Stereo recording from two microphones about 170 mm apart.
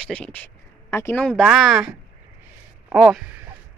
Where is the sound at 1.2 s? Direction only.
Centre (ahead or behind).